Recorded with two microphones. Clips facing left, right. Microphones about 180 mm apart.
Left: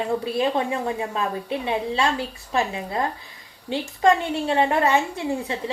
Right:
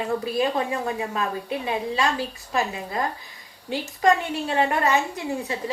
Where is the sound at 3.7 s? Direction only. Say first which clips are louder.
Left 1 dB; 30° left (ahead or behind).